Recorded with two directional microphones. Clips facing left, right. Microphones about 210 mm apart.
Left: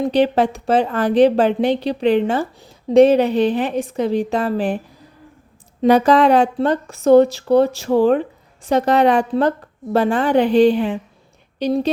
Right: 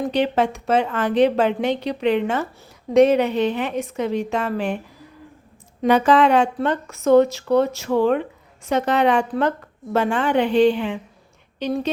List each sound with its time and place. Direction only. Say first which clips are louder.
0.1 s speech: left 4 dB; 35° left (ahead or behind)
5.8 s speech: left 3 dB; 35° left (ahead or behind)